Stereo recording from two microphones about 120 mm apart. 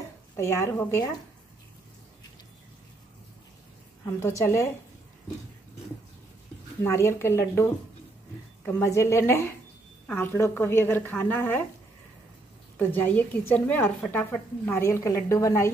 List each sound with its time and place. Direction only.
0.4 s a woman's voice: 20° left (ahead or behind)
4.0 s a woman's voice: 25° left (ahead or behind)
6.8 s a woman's voice: 25° left (ahead or behind)
8.6 s a woman's voice: 25° left (ahead or behind)
12.7 s a woman's voice: 15° left (ahead or behind)